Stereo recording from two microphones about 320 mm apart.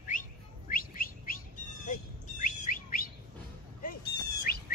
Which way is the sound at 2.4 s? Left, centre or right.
Left.